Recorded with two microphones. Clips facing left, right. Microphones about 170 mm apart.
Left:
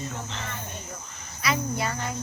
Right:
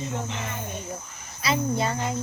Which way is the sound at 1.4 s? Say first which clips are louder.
Right 3 dB; 25° right (ahead or behind).